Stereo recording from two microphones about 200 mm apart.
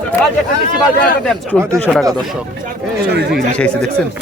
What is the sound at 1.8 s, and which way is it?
Speech, centre (ahead or behind).